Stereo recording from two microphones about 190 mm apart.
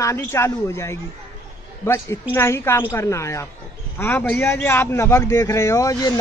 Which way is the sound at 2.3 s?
15° left (ahead or behind).